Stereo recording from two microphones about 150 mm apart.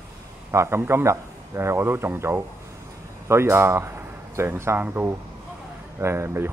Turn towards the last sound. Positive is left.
turn(degrees=-15)  # may be behind; listen again after turning